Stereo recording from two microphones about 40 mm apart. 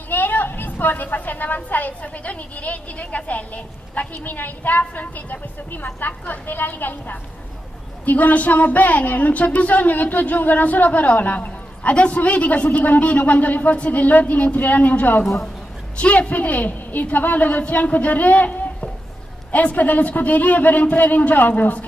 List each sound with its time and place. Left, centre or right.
0.1 s a woman's voice: left